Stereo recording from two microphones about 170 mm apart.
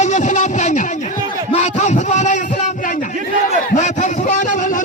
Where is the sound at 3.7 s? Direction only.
45° left (ahead or behind).